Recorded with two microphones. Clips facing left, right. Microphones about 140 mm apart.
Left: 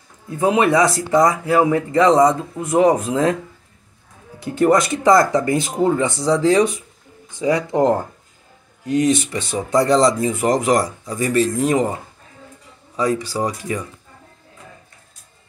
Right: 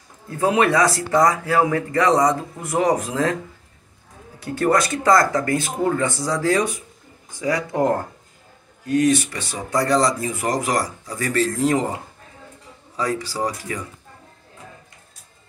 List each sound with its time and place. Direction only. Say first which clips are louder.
0.3 s speech: left 2 dB; 20° left (ahead or behind)
4.4 s speech: left 4 dB; 20° left (ahead or behind)
12.9 s speech: left 4 dB; 20° left (ahead or behind)